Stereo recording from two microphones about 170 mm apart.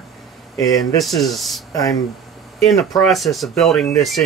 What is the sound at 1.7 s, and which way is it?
Speech, 20° left (ahead or behind).